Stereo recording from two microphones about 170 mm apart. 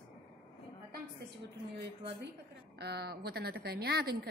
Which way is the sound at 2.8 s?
70° right (ahead or behind).